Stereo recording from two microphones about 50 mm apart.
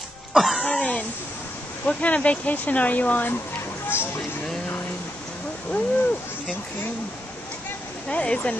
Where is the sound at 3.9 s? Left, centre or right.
Left.